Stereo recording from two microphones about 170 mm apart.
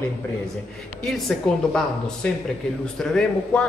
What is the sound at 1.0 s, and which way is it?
Speech, 5° left (ahead or behind).